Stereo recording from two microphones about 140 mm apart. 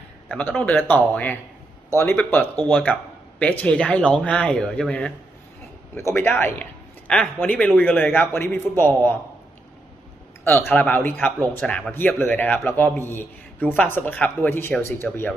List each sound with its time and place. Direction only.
0.3 s speech: 10° left (ahead or behind)
5.9 s speech: 20° left (ahead or behind)
10.4 s a man's voice: 15° left (ahead or behind)